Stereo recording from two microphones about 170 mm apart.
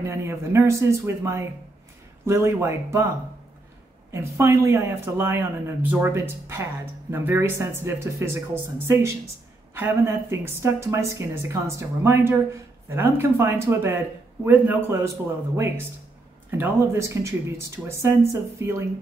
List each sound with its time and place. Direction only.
0.1 s speech: 15° right (ahead or behind)
4.1 s speech: 15° right (ahead or behind)